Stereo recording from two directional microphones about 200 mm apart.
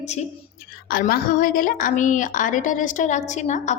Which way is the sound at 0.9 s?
45° left (ahead or behind).